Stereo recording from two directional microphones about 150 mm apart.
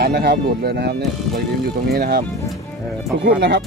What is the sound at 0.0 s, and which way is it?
Speech, 90° right.